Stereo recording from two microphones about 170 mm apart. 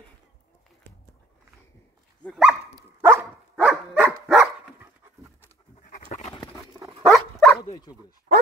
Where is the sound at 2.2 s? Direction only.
Centre (ahead or behind).